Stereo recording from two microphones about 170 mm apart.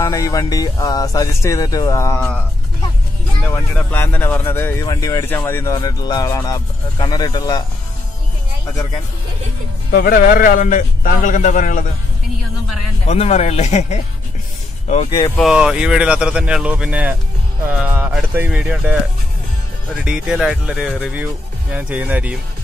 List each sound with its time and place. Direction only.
0.0 s speech: 20° left (ahead or behind)
3.5 s speech: 10° left (ahead or behind)
9.8 s a man's voice: 65° left (ahead or behind); by 11.8 s 50° left (ahead or behind)
13.0 s speech: 40° left (ahead or behind)
15.0 s speech: 25° left (ahead or behind)
15.3 s speech: 5° right (ahead or behind)
20.1 s speech: 5° right (ahead or behind)